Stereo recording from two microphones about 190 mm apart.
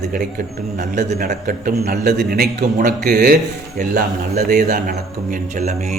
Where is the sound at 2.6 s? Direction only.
40° right (ahead or behind).